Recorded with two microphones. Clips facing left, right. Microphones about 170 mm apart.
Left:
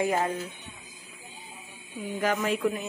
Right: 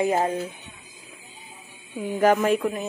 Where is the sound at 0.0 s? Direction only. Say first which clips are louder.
Right 4 dB; 30° right (ahead or behind).